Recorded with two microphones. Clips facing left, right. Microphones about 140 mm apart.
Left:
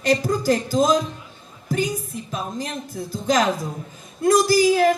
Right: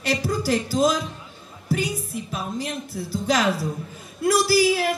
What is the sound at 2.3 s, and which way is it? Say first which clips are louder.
A man's voice: left 2 dB; 40° left (ahead or behind).